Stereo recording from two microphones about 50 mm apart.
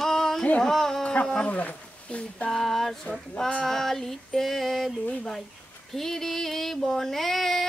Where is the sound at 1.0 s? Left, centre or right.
Left.